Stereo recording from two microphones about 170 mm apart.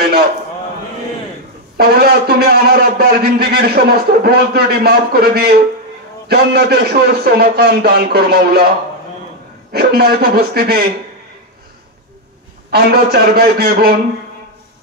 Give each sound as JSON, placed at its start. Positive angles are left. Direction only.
{"t": 1.8, "sound": "a man's voice", "side_deg": -70}
{"t": 9.7, "sound": "speech", "side_deg": -65}
{"t": 12.7, "sound": "speech", "side_deg": -65}